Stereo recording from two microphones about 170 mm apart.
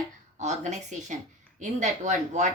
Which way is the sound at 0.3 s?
45° right (ahead or behind).